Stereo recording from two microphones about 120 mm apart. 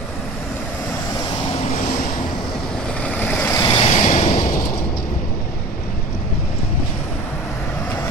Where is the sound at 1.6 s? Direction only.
90° left.